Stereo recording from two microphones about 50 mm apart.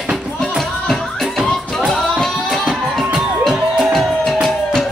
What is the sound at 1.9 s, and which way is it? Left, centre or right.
Music, centre.